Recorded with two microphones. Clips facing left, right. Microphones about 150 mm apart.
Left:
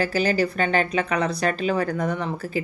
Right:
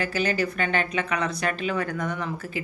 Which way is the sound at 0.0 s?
35° left (ahead or behind).